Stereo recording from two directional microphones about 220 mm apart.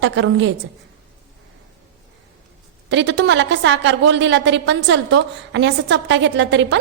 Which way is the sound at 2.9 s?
55° right (ahead or behind).